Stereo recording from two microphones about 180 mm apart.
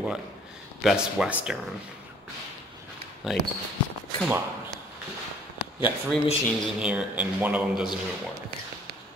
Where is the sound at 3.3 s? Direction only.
Centre (ahead or behind).